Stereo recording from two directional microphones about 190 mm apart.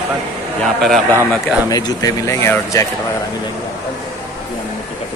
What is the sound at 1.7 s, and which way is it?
Speech, 20° left (ahead or behind).